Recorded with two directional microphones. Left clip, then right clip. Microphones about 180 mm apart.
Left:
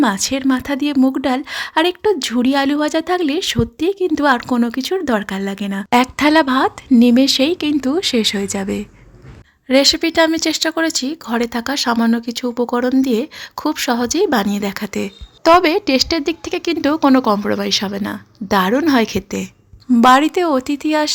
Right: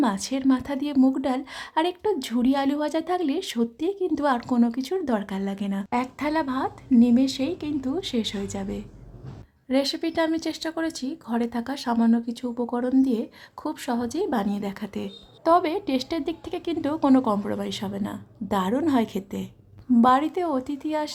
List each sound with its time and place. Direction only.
0.0 s a woman's voice: 20° left (ahead or behind)